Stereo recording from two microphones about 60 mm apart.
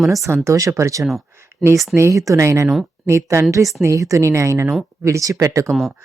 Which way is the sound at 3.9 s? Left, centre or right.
Right.